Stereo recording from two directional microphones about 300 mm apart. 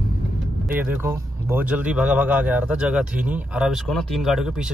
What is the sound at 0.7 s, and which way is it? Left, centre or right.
Speech, centre.